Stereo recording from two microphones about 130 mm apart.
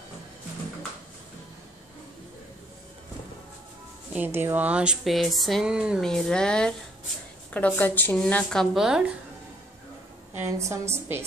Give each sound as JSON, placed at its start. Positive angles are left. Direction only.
{"t": 4.1, "sound": "a woman's voice", "side_deg": -15}
{"t": 10.3, "sound": "a woman's voice", "side_deg": -20}